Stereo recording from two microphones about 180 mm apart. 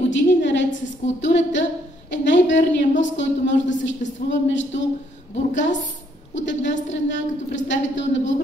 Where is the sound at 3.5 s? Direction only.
90° left.